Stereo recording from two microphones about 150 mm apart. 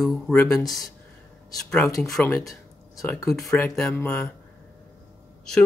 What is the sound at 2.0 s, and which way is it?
Speech, centre (ahead or behind).